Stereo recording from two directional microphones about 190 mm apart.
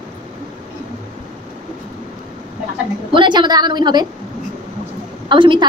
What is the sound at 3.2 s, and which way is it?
Speech, 25° right (ahead or behind).